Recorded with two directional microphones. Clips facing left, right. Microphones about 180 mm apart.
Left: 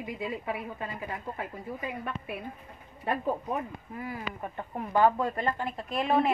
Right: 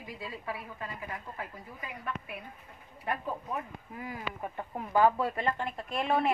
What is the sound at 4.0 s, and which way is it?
Speech, 10° right (ahead or behind).